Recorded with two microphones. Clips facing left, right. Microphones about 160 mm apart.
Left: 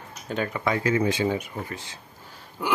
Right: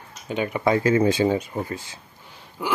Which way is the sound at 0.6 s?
30° right (ahead or behind).